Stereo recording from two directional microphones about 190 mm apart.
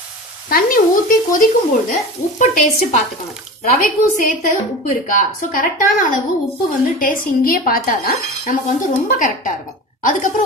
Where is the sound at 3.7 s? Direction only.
45° left (ahead or behind).